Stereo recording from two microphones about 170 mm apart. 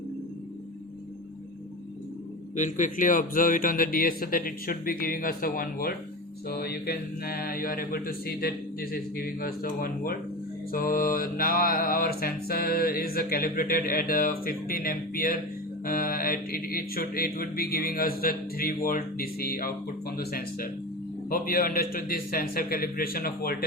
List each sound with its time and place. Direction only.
2.6 s mantra: 45° left (ahead or behind); by 23.6 s 65° left (ahead or behind)